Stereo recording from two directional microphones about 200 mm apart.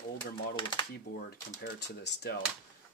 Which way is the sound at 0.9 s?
50° left (ahead or behind).